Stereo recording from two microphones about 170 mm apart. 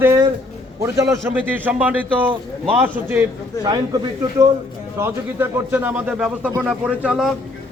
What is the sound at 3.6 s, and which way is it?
A man's voice, 20° right (ahead or behind).